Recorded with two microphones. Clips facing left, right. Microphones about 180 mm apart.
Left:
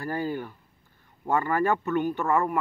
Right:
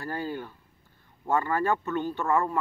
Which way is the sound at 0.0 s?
15° left (ahead or behind).